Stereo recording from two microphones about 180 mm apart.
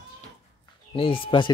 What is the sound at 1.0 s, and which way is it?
Speech, 30° left (ahead or behind).